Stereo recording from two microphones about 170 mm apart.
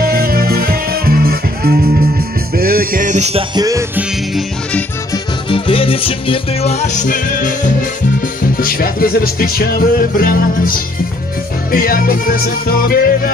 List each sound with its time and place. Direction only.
0.0 s music: 60° right (ahead or behind); by 3.4 s 40° right (ahead or behind)
3.5 s music: 20° right (ahead or behind)
4.3 s music: centre (ahead or behind)
5.1 s music: 30° left (ahead or behind); by 7.5 s 50° left (ahead or behind)
8.5 s music: 60° left (ahead or behind)